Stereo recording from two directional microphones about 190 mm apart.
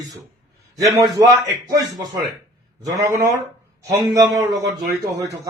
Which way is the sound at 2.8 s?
15° right (ahead or behind).